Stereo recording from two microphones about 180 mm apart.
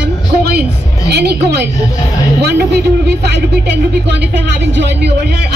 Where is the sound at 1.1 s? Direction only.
65° right (ahead or behind).